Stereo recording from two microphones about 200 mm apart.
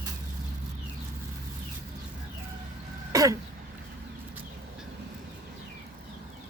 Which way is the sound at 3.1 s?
15° right (ahead or behind).